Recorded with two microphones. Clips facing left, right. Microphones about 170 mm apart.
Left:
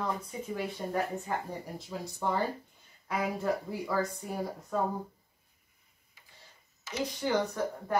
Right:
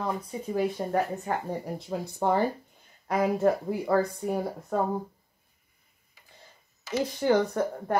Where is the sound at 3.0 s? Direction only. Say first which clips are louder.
Right 8 dB; 45° right (ahead or behind).